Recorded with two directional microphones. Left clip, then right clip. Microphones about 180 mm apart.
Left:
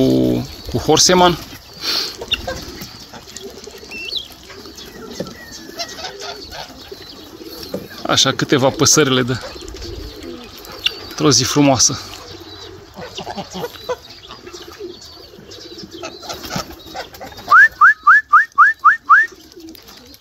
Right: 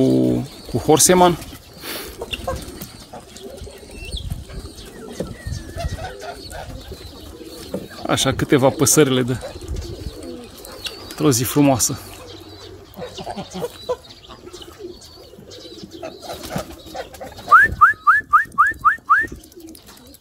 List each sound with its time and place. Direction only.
0.0 s a sound: centre (ahead or behind)
5.8 s bird: 50° right (ahead or behind)
8.1 s speech: 10° right (ahead or behind)
11.1 s speech: 5° right (ahead or behind)
13.0 s a sound: 30° right (ahead or behind)
16.5 s bird: 40° right (ahead or behind)
17.5 s whistling: 5° right (ahead or behind)